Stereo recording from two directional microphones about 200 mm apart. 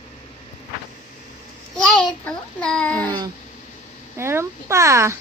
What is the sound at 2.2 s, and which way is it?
Speech, 5° left (ahead or behind).